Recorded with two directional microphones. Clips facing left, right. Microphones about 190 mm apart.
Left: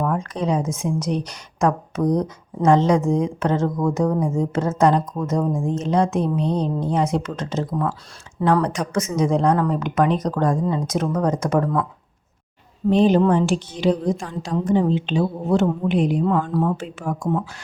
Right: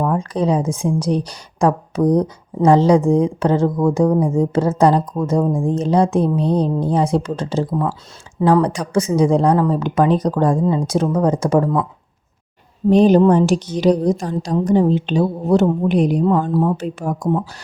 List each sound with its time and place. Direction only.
0.0 s a woman's voice: 30° right (ahead or behind)
12.9 s a woman's voice: 40° right (ahead or behind)